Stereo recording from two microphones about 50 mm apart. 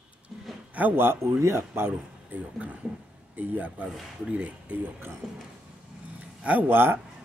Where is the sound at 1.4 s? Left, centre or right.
Right.